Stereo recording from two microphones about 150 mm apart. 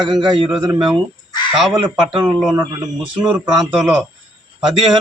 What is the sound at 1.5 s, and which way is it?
Speech, centre (ahead or behind).